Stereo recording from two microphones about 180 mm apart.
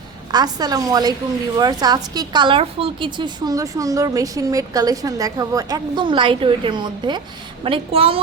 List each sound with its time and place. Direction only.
0.3 s a woman's voice: 20° right (ahead or behind)